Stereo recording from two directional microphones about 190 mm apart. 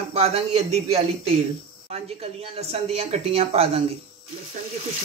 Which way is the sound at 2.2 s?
35° right (ahead or behind).